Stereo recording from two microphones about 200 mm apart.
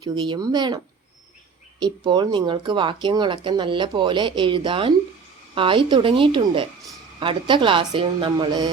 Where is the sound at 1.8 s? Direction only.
20° right (ahead or behind).